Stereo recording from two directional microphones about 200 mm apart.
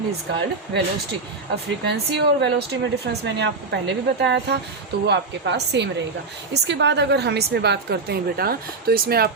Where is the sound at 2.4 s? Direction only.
55° right (ahead or behind).